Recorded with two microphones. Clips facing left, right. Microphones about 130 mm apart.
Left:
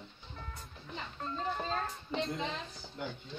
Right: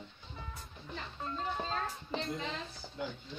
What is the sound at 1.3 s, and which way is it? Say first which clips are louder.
A child's voice: left 1 dB; centre (ahead or behind).